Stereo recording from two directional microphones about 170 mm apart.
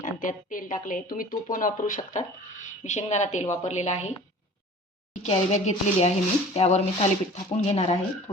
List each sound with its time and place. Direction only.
0.0 s speech: 50° left (ahead or behind)
5.2 s speech: 40° left (ahead or behind)